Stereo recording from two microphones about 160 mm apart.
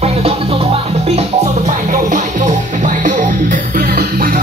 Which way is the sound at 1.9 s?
55° right (ahead or behind).